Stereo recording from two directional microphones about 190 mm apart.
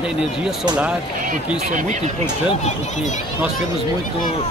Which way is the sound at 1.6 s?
40° right (ahead or behind).